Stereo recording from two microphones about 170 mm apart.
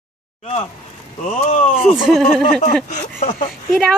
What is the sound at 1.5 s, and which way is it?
Speech, 40° left (ahead or behind).